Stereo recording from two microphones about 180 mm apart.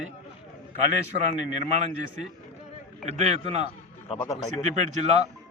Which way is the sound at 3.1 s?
35° right (ahead or behind).